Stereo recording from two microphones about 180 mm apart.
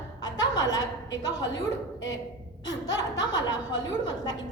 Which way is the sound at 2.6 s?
20° left (ahead or behind).